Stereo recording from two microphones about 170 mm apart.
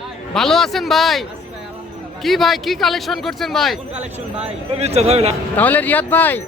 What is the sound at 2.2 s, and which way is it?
A man's voice, centre (ahead or behind).